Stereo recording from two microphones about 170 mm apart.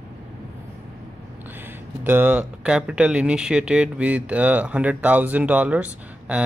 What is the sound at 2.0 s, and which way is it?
Speech, 10° right (ahead or behind).